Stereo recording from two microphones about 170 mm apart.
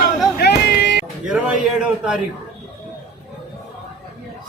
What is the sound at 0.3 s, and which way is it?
Music, 75° left (ahead or behind).